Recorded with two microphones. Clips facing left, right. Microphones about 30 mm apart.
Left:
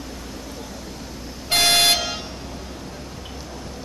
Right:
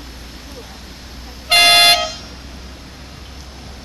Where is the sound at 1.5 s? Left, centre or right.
Right.